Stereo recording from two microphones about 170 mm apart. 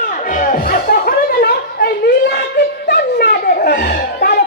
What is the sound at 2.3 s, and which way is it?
Snicker, 70° left (ahead or behind).